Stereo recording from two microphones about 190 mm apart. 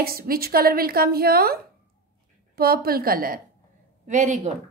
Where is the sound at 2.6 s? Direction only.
55° right (ahead or behind).